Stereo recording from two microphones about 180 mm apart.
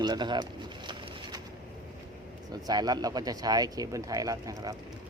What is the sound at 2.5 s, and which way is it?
Speech, 20° right (ahead or behind).